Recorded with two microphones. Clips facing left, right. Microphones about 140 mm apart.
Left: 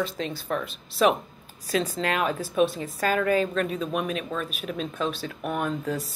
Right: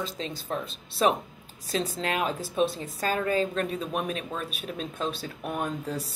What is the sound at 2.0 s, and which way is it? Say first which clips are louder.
Speech: left 3 dB; 50° left (ahead or behind).